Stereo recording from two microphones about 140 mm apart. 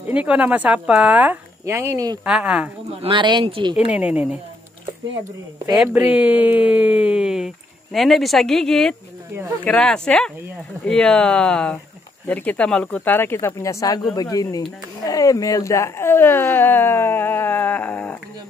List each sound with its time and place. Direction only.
0.0 s speech: 10° right (ahead or behind)
1.7 s speech: 20° right (ahead or behind)
2.2 s speech: 5° right (ahead or behind)
3.0 s speech: 35° right (ahead or behind)
3.7 s speech: 10° right (ahead or behind)
5.9 s speech: 10° right (ahead or behind); by 18.1 s 10° left (ahead or behind)